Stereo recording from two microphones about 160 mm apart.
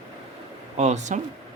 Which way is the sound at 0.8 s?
45° right (ahead or behind).